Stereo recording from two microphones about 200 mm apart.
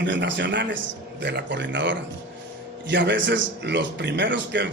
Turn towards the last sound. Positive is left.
turn(degrees=-60)  # may be behind; listen again after turning